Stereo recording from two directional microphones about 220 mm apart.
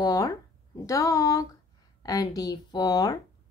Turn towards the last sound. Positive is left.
turn(degrees=15)  # may be behind; listen again after turning